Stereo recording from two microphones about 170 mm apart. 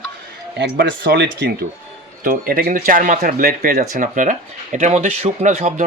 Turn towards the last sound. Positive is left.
turn(degrees=-45)  # may be behind; listen again after turning